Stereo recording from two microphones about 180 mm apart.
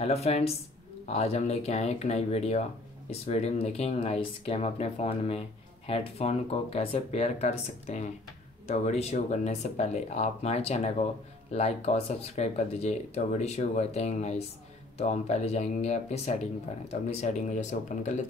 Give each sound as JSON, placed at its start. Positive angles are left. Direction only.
{"t": 0.0, "sound": "speech", "side_deg": 35}